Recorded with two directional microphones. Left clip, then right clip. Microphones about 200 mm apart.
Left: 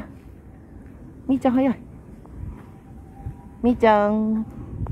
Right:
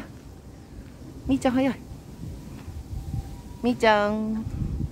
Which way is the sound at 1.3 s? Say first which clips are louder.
Left 3 dB; 20° left (ahead or behind).